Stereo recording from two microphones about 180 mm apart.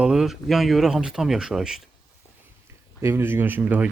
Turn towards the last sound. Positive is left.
turn(degrees=-10)  # may be behind; listen again after turning